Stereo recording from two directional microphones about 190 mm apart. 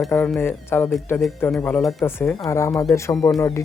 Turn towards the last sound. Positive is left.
turn(degrees=15)  # may be behind; listen again after turning